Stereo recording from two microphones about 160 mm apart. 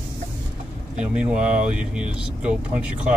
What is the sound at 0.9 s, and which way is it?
Speech, 10° right (ahead or behind).